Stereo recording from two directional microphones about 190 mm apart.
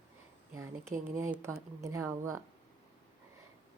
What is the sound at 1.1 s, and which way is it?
A woman's voice, 15° right (ahead or behind).